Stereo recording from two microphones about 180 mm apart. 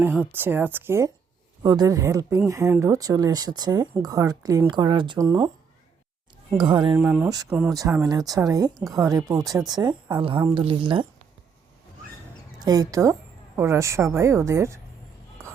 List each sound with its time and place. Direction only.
0.0 s a woman's voice: 10° right (ahead or behind)
6.6 s speech: 25° right (ahead or behind)
6.9 s a woman's voice: 10° right (ahead or behind)
7.7 s speech: 20° right (ahead or behind)
12.5 s a woman's voice: 20° right (ahead or behind)